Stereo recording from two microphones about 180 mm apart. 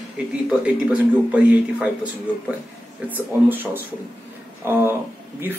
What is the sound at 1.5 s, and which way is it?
Speech, 10° right (ahead or behind).